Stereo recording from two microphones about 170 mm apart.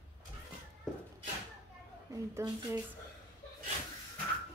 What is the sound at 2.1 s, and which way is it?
Speech, 15° right (ahead or behind).